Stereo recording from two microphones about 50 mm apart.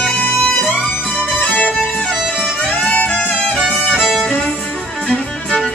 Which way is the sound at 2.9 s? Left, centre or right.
Left.